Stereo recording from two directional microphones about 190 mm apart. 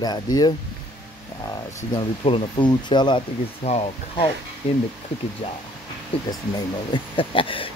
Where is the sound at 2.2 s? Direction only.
25° left (ahead or behind).